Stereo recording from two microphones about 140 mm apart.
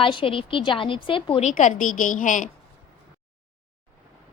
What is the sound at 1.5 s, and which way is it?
Speech, 65° left (ahead or behind).